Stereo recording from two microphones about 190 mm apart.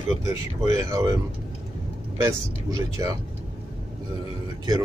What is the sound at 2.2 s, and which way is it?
Speech, 15° right (ahead or behind).